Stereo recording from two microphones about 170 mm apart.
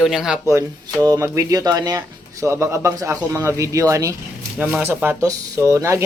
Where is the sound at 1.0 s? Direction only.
15° right (ahead or behind).